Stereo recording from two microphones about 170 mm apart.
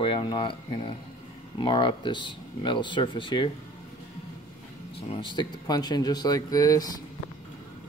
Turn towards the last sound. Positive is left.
turn(degrees=20)  # may be behind; listen again after turning